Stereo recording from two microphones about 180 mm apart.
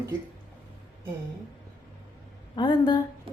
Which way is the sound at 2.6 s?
25° left (ahead or behind).